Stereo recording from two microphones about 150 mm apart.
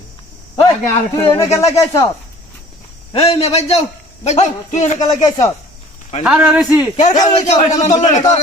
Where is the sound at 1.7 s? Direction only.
20° left (ahead or behind).